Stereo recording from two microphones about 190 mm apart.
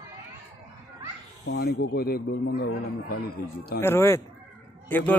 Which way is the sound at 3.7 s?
10° left (ahead or behind).